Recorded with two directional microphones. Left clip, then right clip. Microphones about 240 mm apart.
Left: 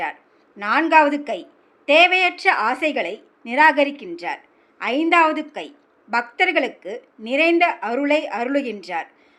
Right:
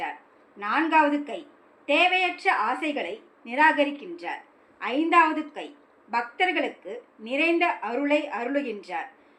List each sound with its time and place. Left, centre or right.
0.6 s a woman's voice: left